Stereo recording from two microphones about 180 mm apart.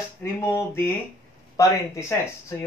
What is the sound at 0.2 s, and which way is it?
Speech, 15° left (ahead or behind).